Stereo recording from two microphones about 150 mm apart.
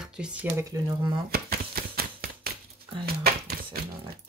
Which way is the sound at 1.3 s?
90° right.